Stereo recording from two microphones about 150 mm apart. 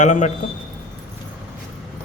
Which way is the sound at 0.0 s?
55° left (ahead or behind).